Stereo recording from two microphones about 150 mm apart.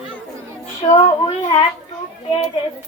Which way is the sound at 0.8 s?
45° left (ahead or behind).